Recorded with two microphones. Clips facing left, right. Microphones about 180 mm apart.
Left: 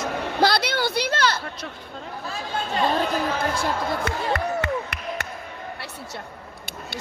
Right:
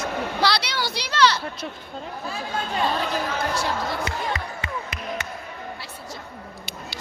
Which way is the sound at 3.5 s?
55° left (ahead or behind).